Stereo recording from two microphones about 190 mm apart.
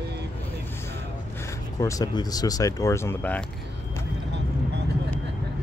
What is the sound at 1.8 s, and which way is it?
Speech, 20° left (ahead or behind).